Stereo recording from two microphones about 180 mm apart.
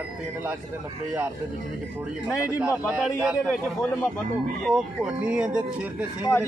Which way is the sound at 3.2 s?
5° right (ahead or behind).